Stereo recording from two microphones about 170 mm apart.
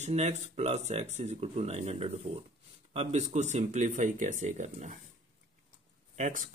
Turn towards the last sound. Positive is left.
turn(degrees=-45)  # may be behind; listen again after turning